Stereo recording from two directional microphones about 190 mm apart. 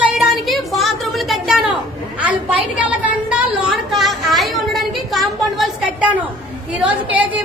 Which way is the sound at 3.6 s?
Centre (ahead or behind).